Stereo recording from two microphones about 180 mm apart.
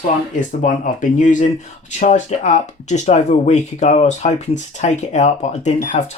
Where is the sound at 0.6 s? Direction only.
45° left (ahead or behind).